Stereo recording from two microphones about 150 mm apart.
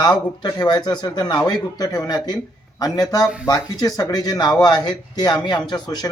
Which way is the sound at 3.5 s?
25° left (ahead or behind).